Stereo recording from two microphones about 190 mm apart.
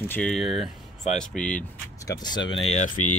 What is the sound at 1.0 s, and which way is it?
Speech, 35° left (ahead or behind).